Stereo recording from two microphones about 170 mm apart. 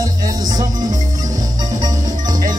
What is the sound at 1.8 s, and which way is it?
Music, 20° right (ahead or behind).